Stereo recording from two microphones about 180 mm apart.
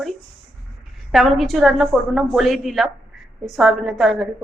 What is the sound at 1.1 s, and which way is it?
A woman's voice, centre (ahead or behind).